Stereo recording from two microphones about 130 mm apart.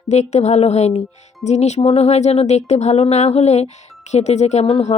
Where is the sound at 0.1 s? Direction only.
60° left (ahead or behind).